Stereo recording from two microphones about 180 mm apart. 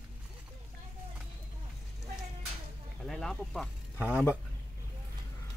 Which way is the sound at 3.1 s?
Centre (ahead or behind).